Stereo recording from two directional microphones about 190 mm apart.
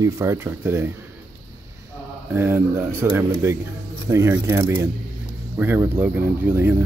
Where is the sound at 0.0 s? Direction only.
15° right (ahead or behind).